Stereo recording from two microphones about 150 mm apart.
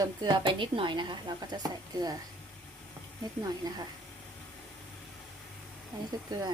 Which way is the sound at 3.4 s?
25° right (ahead or behind).